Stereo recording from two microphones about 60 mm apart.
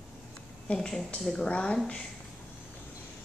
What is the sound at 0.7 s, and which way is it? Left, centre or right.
A woman's voice, centre.